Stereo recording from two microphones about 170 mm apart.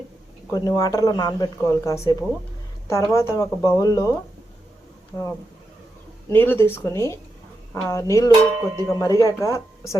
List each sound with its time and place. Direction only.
0.5 s speech: 20° left (ahead or behind)
6.3 s speech: 10° left (ahead or behind)
8.3 s cowbell: 25° right (ahead or behind)
8.9 s speech: 20° left (ahead or behind)